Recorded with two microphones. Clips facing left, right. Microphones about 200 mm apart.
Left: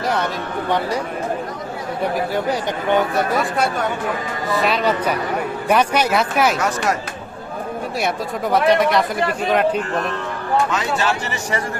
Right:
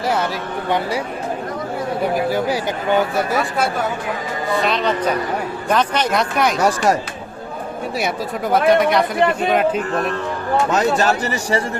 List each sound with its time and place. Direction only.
2.3 s speech: 5° right (ahead or behind)
6.6 s speech: 35° right (ahead or behind)
7.9 s speech: centre (ahead or behind)
10.7 s speech: 40° right (ahead or behind)